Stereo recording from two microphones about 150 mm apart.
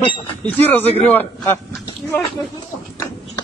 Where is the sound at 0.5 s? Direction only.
15° left (ahead or behind).